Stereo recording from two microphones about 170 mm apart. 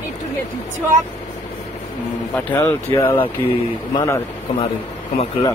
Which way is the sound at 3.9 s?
20° left (ahead or behind).